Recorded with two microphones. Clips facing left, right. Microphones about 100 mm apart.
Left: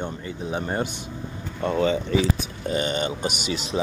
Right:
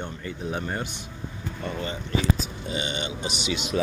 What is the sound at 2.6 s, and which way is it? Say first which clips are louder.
Speech: left 6 dB; 45° left (ahead or behind).